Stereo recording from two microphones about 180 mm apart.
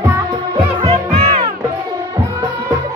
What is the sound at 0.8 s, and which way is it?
Music, 30° right (ahead or behind).